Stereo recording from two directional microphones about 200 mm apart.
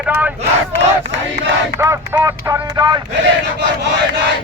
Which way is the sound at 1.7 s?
15° right (ahead or behind).